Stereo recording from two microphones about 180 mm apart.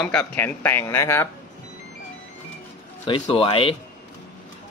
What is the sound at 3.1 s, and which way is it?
Speech, 30° left (ahead or behind).